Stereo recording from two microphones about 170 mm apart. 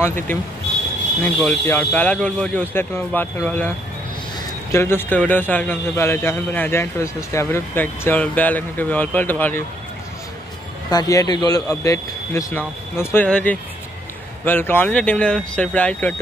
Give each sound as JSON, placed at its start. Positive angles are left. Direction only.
{"t": 1.2, "sound": "a man's voice", "side_deg": 15}
{"t": 4.7, "sound": "a man's voice", "side_deg": 15}
{"t": 10.9, "sound": "a man's voice", "side_deg": 20}